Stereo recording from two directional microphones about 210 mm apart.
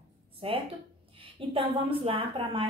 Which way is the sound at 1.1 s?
25° right (ahead or behind).